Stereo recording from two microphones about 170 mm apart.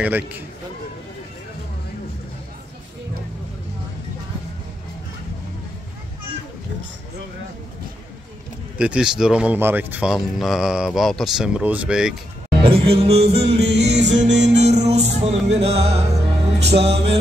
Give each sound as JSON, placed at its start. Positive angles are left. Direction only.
{"t": 0.0, "sound": "a man's voice", "side_deg": -10}
{"t": 8.7, "sound": "speech", "side_deg": -5}
{"t": 12.6, "sound": "music", "side_deg": -35}
{"t": 14.2, "sound": "music", "side_deg": -90}
{"t": 14.6, "sound": "music", "side_deg": -40}
{"t": 16.5, "sound": "music", "side_deg": -85}
{"t": 16.8, "sound": "music", "side_deg": -35}